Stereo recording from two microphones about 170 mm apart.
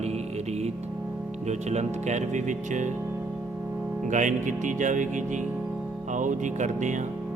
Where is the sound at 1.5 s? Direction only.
40° right (ahead or behind).